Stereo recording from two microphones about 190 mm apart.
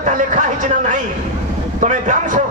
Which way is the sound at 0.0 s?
40° right (ahead or behind).